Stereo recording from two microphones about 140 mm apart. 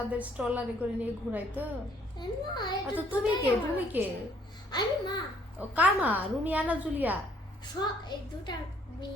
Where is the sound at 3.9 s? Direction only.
10° right (ahead or behind).